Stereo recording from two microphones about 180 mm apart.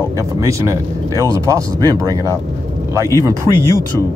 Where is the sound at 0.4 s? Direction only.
15° right (ahead or behind).